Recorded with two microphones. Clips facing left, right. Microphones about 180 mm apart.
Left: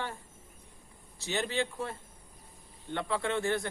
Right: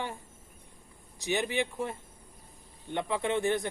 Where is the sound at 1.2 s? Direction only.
15° right (ahead or behind).